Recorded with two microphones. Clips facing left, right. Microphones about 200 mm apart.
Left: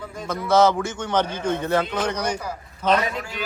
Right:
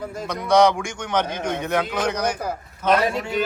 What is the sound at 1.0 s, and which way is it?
Speech, 10° right (ahead or behind).